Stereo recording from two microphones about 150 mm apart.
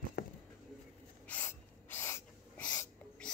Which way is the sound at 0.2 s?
90° left.